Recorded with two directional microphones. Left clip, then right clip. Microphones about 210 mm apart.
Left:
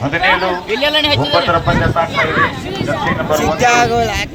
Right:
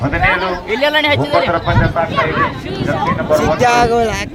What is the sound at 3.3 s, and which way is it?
Speech, 50° right (ahead or behind).